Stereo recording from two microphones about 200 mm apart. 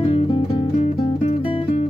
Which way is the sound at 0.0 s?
30° left (ahead or behind).